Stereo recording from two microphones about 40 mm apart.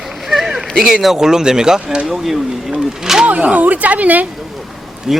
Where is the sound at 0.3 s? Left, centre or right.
Centre.